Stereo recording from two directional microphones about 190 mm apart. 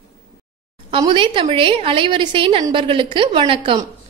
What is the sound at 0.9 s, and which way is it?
A woman's voice, 25° right (ahead or behind).